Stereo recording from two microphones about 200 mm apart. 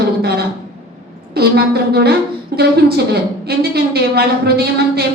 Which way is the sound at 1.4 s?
55° right (ahead or behind).